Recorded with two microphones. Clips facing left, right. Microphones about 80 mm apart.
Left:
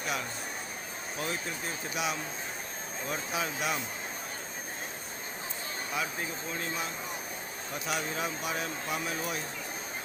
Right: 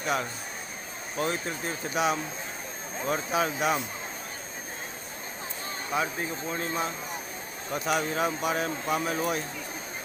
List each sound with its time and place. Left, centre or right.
1.2 s speech: right
5.9 s speech: right
7.9 s speech: right